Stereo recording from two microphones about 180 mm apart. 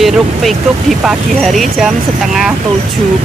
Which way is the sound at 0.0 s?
Centre (ahead or behind).